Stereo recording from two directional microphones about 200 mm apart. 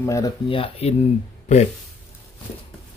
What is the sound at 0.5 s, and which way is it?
Speech, 30° left (ahead or behind).